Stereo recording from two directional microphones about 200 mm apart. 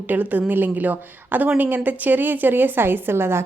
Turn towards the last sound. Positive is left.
turn(degrees=-10)  # may be behind; listen again after turning